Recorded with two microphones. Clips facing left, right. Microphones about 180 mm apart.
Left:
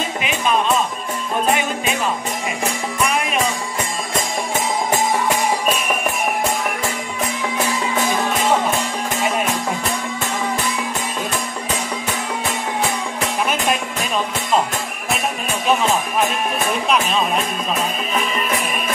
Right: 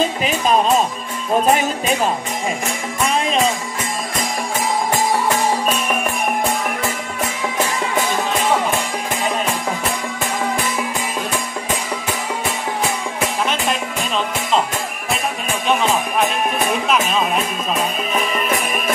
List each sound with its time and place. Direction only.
0.2 s speech: 40° right (ahead or behind)
3.1 s music: 30° right (ahead or behind)
13.5 s music: 10° left (ahead or behind)